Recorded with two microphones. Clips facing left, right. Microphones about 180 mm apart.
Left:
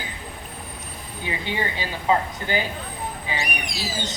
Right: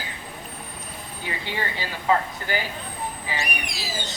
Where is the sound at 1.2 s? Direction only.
15° left (ahead or behind).